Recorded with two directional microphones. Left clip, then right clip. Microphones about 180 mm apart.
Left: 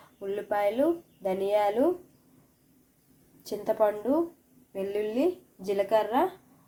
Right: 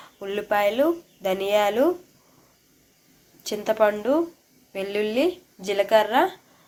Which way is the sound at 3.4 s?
Centre (ahead or behind).